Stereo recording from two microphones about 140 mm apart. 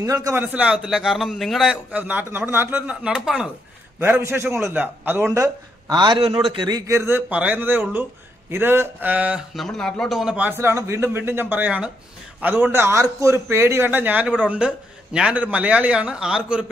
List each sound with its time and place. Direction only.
0.0 s a man's voice: 25° right (ahead or behind); by 2.0 s centre (ahead or behind)
2.0 s a man's voice: 15° right (ahead or behind)
4.0 s a man's voice: 15° right (ahead or behind)
7.0 s a man's voice: 15° right (ahead or behind)
9.6 s a man's voice: centre (ahead or behind)